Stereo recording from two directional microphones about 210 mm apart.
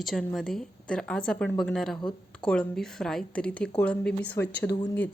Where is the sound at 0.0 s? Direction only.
Centre (ahead or behind).